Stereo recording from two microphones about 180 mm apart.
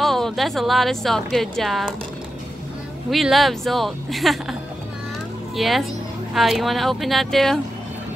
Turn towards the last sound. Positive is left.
turn(degrees=0)  # may be behind; listen again after turning